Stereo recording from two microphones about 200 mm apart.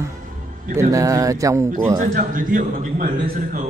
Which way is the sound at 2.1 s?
45° right (ahead or behind).